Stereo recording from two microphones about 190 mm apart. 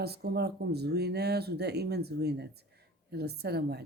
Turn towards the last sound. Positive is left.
turn(degrees=-60)  # may be behind; listen again after turning